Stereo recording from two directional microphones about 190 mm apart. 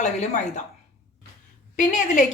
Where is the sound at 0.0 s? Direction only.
40° left (ahead or behind).